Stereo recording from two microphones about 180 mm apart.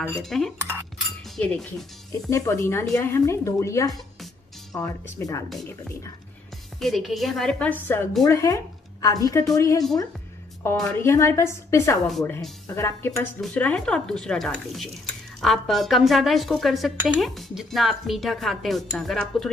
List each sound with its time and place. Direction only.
0.0 s speech: 5° left (ahead or behind)
2.2 s speech: 15° left (ahead or behind)
6.8 s speech: centre (ahead or behind)
8.3 s speech: 15° left (ahead or behind)